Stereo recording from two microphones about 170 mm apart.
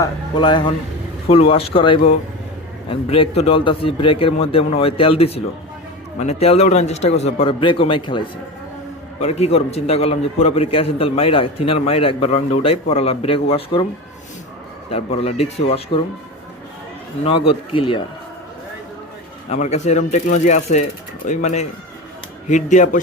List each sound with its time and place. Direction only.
0.0 s a man's voice: 25° left (ahead or behind)
14.8 s a man's voice: 35° left (ahead or behind)
17.2 s a man's voice: 35° left (ahead or behind)
19.5 s a man's voice: 40° left (ahead or behind)